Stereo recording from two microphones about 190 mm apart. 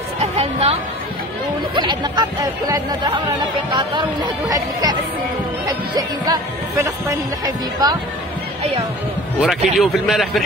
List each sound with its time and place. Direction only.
0.2 s music: 30° right (ahead or behind)
1.8 s speech: 20° right (ahead or behind)
9.4 s a man's voice: centre (ahead or behind)